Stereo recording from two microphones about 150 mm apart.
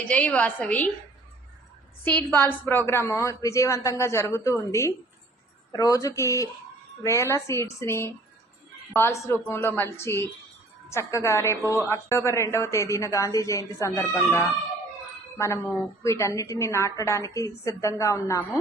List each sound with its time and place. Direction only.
0.0 s a woman's voice: 10° left (ahead or behind)
2.0 s a woman's voice: 10° left (ahead or behind)
15.4 s a woman's voice: 20° left (ahead or behind)